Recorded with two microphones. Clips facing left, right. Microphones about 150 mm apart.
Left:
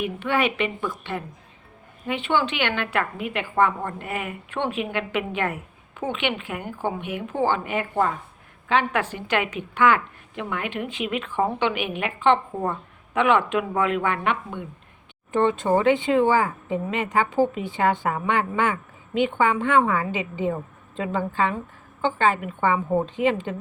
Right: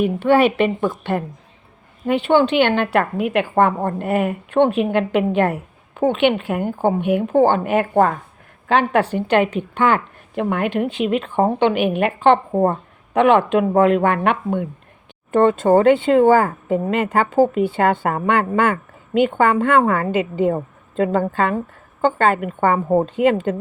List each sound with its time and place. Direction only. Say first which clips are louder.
0.0 s a woman's voice: right 9 dB; 35° right (ahead or behind)
2.8 s a woman's voice: right 8 dB; 45° right (ahead or behind)
8.6 s a woman's voice: right 6 dB; 45° right (ahead or behind)
10.3 s speech: right 9 dB; 45° right (ahead or behind)
10.8 s a woman's voice: right 8 dB; 35° right (ahead or behind)
11.3 s speech: right 7 dB; 45° right (ahead or behind)